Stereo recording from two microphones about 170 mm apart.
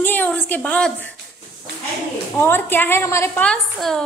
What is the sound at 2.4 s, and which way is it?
A woman's voice, 15° left (ahead or behind).